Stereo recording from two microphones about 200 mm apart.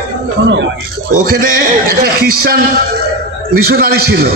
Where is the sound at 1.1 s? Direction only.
45° right (ahead or behind).